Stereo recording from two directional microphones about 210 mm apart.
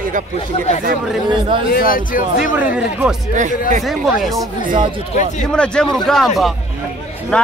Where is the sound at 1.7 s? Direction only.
40° left (ahead or behind).